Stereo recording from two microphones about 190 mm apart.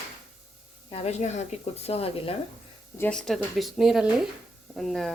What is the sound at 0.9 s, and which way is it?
Speech, 35° left (ahead or behind).